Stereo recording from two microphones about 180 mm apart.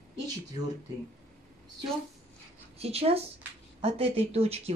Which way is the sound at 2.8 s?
35° right (ahead or behind).